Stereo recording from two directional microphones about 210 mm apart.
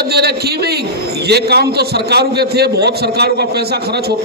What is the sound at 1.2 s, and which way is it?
A man's voice, 50° right (ahead or behind).